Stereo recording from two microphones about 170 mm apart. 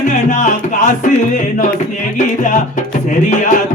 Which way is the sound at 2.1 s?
45° left (ahead or behind).